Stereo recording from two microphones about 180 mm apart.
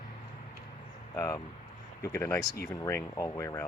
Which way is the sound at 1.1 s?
15° left (ahead or behind).